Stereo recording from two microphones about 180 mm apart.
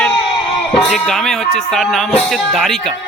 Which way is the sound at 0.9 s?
Centre (ahead or behind).